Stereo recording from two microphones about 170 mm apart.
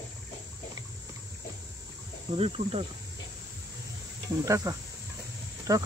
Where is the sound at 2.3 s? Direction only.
35° right (ahead or behind).